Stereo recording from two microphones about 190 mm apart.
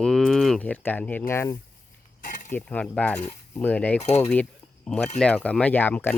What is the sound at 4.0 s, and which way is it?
Cutlery, 35° left (ahead or behind).